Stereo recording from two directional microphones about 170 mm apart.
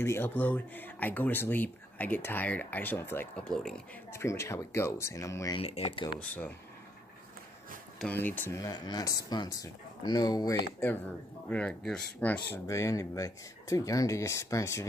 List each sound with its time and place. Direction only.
0.0 s speech: 15° left (ahead or behind)
4.1 s speech: 15° left (ahead or behind)
5.6 s speech: 35° left (ahead or behind)
6.1 s speech: 10° left (ahead or behind)
8.0 s speech: 10° left (ahead or behind)